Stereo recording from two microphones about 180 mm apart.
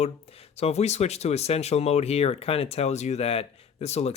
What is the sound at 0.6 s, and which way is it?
Speech, 35° left (ahead or behind).